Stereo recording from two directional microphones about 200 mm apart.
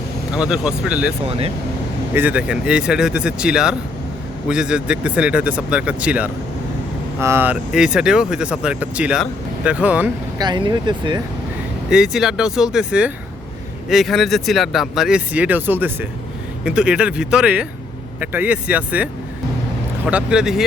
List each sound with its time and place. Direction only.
0.3 s speech: 5° right (ahead or behind)
2.1 s speech: 5° right (ahead or behind)
10.3 s speech: 20° right (ahead or behind)
11.9 s speech: centre (ahead or behind)
20.1 s speech: 5° right (ahead or behind)